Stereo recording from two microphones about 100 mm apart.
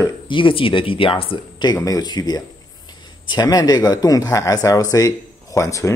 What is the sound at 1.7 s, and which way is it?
A man's voice, 40° left (ahead or behind).